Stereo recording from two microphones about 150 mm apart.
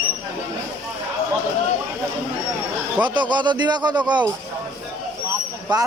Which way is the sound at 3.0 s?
30° right (ahead or behind).